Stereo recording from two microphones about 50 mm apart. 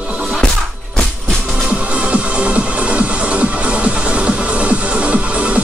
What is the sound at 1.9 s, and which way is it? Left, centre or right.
Music, right.